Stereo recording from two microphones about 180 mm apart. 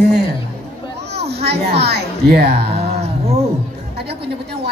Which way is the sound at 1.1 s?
65° right (ahead or behind).